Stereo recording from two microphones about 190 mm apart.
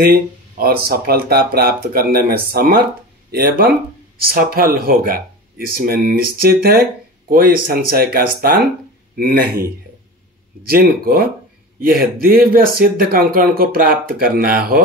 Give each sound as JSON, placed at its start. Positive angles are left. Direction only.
{"t": 0.0, "sound": "speech", "side_deg": -50}
{"t": 10.7, "sound": "speech", "side_deg": -50}